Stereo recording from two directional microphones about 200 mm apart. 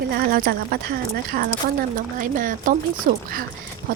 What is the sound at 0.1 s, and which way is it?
Speech, 50° right (ahead or behind).